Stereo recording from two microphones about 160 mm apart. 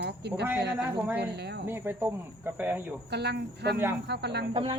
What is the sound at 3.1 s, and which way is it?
Speech, 90° right.